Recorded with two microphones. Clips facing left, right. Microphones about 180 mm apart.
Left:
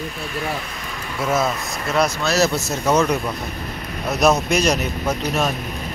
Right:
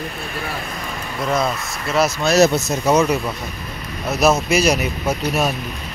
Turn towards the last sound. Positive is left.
turn(degrees=-10)  # may be behind; listen again after turning